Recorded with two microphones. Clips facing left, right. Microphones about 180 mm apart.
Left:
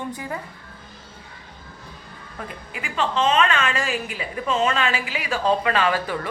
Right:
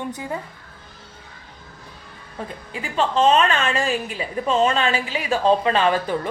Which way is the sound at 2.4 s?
30° right (ahead or behind).